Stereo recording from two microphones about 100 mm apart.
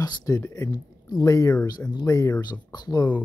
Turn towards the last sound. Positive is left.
turn(degrees=45)  # may be behind; listen again after turning